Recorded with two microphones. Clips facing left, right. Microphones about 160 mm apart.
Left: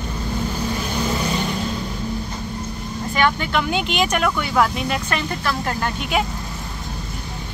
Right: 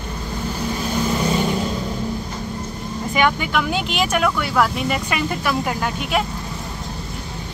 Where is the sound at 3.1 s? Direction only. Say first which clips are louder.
Right 1 dB; 10° right (ahead or behind).